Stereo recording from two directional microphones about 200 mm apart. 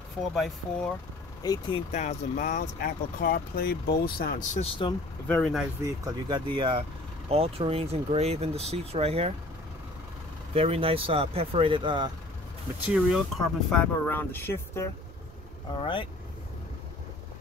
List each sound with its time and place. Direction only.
0.3 s speech: centre (ahead or behind)
1.4 s speech: 20° left (ahead or behind)
1.9 s speech: 35° left (ahead or behind)
4.6 s speech: 25° left (ahead or behind)
5.3 s speech: centre (ahead or behind)
5.9 s speech: 20° right (ahead or behind)
10.5 s speech: 30° right (ahead or behind)
12.8 s speech: 5° right (ahead or behind)
13.7 s speech: 5° left (ahead or behind)
15.7 s speech: 25° left (ahead or behind)